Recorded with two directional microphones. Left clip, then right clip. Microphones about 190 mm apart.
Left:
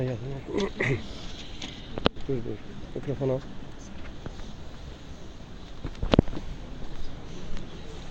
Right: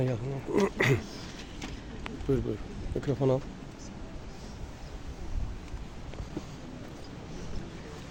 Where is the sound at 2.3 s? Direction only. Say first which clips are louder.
Right 2 dB; 40° right (ahead or behind).